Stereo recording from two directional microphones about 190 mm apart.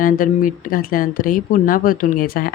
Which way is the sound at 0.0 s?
45° left (ahead or behind).